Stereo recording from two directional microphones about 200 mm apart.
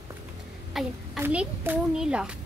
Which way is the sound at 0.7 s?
Centre (ahead or behind).